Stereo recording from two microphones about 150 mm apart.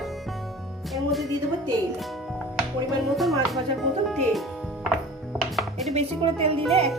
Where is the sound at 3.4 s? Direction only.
Centre (ahead or behind).